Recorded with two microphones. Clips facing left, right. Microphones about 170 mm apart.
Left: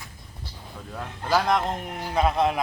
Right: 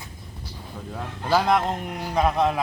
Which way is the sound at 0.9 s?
5° right (ahead or behind).